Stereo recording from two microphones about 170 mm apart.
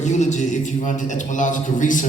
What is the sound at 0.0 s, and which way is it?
A man's voice, 45° left (ahead or behind).